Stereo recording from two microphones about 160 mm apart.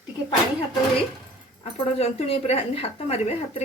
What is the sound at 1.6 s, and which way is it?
Speech, 40° left (ahead or behind).